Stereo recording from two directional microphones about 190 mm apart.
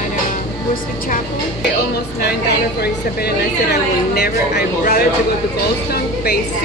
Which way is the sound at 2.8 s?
55° left (ahead or behind).